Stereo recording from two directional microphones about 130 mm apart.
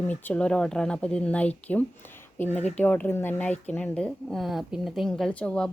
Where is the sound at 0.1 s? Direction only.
10° left (ahead or behind).